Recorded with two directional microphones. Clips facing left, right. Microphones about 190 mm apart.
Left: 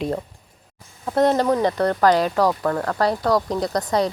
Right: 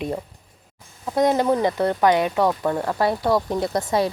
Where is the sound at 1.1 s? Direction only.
15° right (ahead or behind).